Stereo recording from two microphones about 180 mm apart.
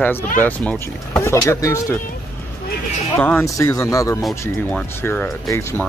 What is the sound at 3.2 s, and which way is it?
Speech, 15° left (ahead or behind).